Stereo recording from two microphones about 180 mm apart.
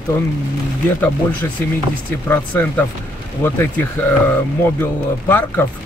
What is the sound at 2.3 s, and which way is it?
Speech, 10° left (ahead or behind).